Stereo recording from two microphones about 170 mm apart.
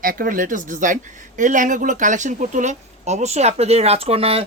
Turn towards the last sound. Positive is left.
turn(degrees=-35)  # may be behind; listen again after turning